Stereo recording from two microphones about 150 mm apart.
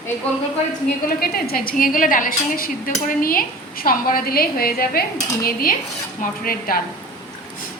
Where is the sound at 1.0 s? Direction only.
85° left.